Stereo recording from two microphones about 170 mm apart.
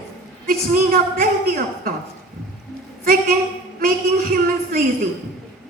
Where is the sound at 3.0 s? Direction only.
55° right (ahead or behind).